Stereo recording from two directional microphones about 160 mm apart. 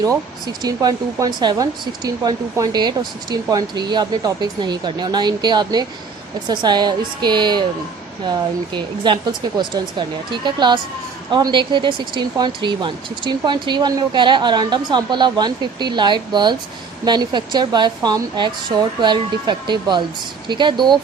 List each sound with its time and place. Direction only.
0.0 s speech: 25° right (ahead or behind)